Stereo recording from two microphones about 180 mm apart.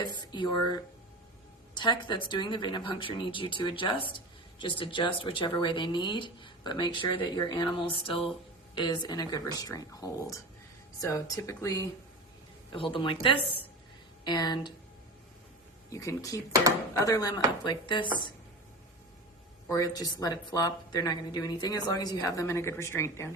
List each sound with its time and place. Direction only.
0.0 s speech: 25° left (ahead or behind)
12.7 s speech: 30° left (ahead or behind)
15.9 s speech: 20° left (ahead or behind)
19.6 s speech: 20° left (ahead or behind)